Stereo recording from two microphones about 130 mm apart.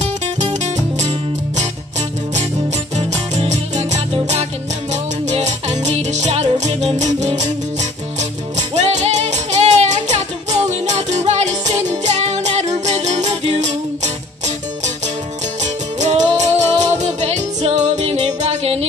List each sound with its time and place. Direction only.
0.0 s music: 60° right (ahead or behind)